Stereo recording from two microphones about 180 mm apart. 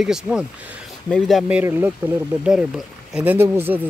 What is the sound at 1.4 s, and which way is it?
Speech, 10° right (ahead or behind).